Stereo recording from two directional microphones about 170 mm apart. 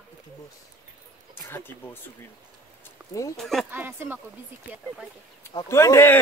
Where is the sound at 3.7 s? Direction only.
10° right (ahead or behind).